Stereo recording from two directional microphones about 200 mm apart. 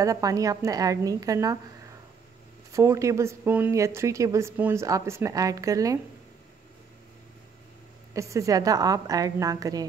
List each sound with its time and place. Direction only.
0.0 s a woman's voice: 15° right (ahead or behind)
2.7 s a woman's voice: 15° right (ahead or behind)
8.1 s a woman's voice: 15° right (ahead or behind)